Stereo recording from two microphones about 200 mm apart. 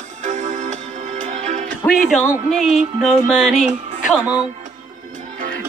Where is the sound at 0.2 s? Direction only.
40° right (ahead or behind).